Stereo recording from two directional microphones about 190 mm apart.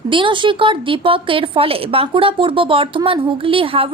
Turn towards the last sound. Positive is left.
turn(degrees=-30)  # may be behind; listen again after turning